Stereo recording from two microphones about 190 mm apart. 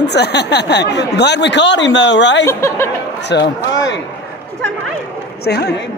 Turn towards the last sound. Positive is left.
turn(degrees=60)  # may be behind; listen again after turning